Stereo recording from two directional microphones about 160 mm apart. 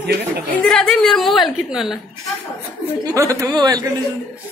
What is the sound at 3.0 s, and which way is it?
Speech, 20° right (ahead or behind).